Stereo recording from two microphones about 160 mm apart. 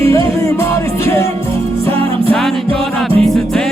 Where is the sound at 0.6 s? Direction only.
15° left (ahead or behind).